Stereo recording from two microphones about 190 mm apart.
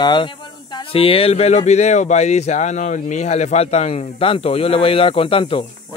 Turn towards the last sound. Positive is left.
turn(degrees=30)  # may be behind; listen again after turning